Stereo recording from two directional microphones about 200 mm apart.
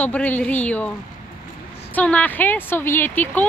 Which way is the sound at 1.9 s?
5° left (ahead or behind).